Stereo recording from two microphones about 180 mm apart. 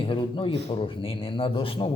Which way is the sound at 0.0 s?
30° left (ahead or behind).